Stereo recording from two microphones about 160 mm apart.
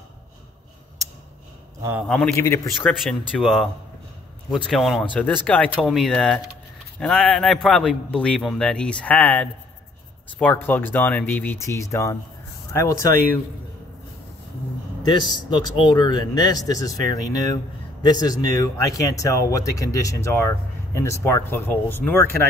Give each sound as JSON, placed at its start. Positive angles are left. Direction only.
{"t": 2.0, "sound": "a man's voice", "side_deg": 5}
{"t": 2.3, "sound": "speech", "side_deg": 15}
{"t": 3.0, "sound": "a man's voice", "side_deg": 0}
{"t": 15.0, "sound": "speech", "side_deg": 30}